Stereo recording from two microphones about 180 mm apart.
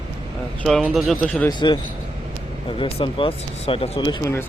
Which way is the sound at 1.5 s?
25° left (ahead or behind).